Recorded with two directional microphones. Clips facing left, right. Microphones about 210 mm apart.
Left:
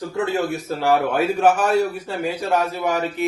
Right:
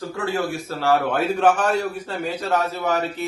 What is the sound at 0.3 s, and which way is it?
A man's voice, 20° left (ahead or behind).